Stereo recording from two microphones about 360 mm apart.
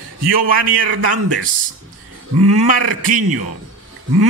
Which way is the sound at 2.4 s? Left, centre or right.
Right.